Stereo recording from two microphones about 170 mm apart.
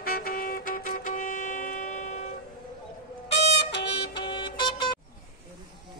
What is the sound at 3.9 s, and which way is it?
Music, 25° left (ahead or behind).